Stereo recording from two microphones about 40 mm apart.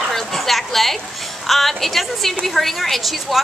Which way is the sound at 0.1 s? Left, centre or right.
Centre.